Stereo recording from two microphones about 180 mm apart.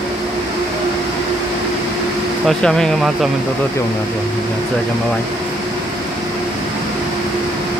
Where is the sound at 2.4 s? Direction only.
5° left (ahead or behind).